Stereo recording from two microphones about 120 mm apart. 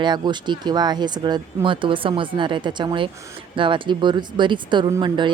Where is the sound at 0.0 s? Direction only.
40° right (ahead or behind).